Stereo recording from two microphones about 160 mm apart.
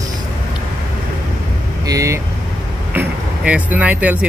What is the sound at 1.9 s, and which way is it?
Speech, 20° right (ahead or behind).